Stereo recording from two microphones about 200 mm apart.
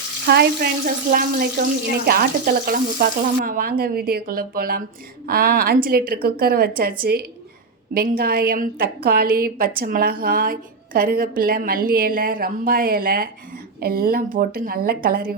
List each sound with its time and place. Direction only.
0.3 s a woman's voice: 55° right (ahead or behind)